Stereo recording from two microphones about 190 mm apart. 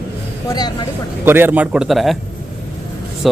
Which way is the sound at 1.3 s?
10° right (ahead or behind).